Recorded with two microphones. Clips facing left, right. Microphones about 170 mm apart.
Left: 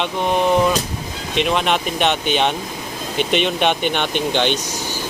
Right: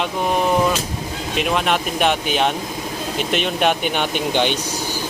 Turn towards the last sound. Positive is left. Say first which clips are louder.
# left 1 dB
turn(degrees=-10)  # may be behind; listen again after turning